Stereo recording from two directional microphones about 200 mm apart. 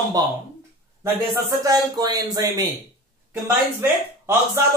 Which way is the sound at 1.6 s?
20° right (ahead or behind).